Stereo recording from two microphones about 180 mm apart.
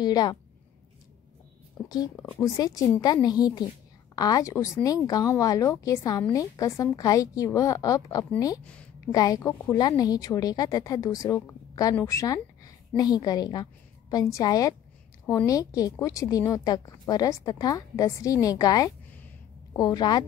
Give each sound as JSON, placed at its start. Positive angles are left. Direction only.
{"t": 0.0, "sound": "a woman's voice", "side_deg": 20}
{"t": 2.4, "sound": "a woman's voice", "side_deg": 20}
{"t": 8.6, "sound": "a sound", "side_deg": 5}
{"t": 9.1, "sound": "a woman's voice", "side_deg": 20}